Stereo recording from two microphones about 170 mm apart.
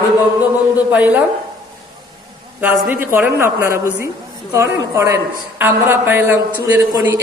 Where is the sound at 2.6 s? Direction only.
10° right (ahead or behind).